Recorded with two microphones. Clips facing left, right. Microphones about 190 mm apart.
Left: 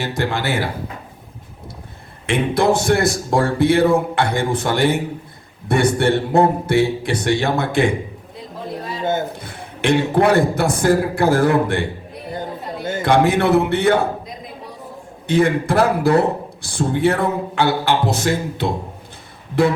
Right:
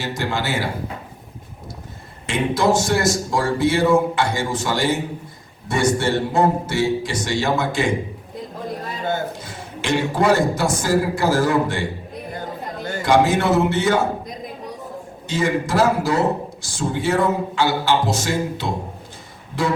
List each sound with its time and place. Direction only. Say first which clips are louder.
0.0 s a man's voice: left 3 dB; 60° left (ahead or behind)
2.2 s a man's voice: left 2 dB; 60° left (ahead or behind)
9.4 s a man's voice: left 6 dB; 60° left (ahead or behind)
12.3 s music: left 4 dB; 20° left (ahead or behind)
13.0 s a man's voice: left 1 dB; 60° left (ahead or behind)
15.3 s a man's voice: left 4 dB; 60° left (ahead or behind)